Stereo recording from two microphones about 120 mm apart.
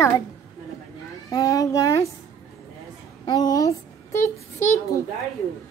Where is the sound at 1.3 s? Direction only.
30° left (ahead or behind).